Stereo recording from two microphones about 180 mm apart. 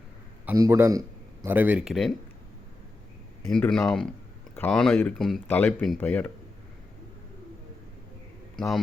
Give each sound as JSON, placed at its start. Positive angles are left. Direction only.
{"t": 0.5, "sound": "a man's voice", "side_deg": -15}
{"t": 3.5, "sound": "speech", "side_deg": 5}
{"t": 8.5, "sound": "a man's voice", "side_deg": 0}